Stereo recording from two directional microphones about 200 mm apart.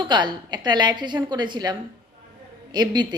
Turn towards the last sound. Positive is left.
turn(degrees=-20)  # may be behind; listen again after turning